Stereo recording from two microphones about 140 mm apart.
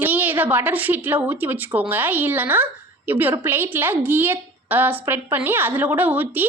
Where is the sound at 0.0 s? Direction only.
15° right (ahead or behind).